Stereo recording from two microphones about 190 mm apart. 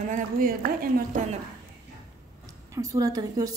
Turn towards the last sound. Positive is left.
turn(degrees=-20)  # may be behind; listen again after turning